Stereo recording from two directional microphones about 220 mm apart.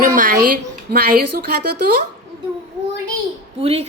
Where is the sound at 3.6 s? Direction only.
25° right (ahead or behind).